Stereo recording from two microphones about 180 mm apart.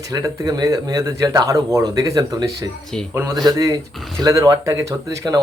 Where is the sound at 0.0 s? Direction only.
20° right (ahead or behind).